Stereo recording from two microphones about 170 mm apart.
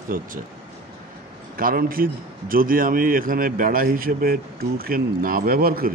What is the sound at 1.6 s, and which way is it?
A man's voice, 55° right (ahead or behind).